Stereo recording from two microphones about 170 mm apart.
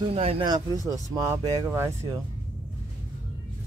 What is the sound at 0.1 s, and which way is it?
Speech, 35° right (ahead or behind).